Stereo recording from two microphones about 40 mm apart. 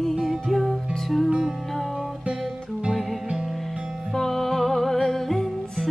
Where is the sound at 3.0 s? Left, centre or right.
Centre.